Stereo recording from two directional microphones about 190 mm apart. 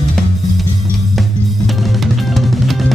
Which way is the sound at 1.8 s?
Centre (ahead or behind).